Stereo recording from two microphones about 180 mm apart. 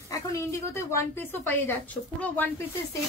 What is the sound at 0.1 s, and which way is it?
A woman's voice, 15° left (ahead or behind).